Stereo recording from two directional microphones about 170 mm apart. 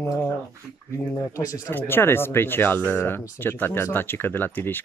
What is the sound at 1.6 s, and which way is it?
Speech, 15° left (ahead or behind).